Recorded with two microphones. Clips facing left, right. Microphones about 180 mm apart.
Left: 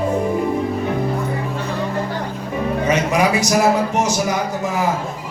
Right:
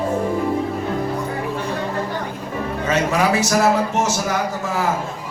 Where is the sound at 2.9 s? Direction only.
15° left (ahead or behind).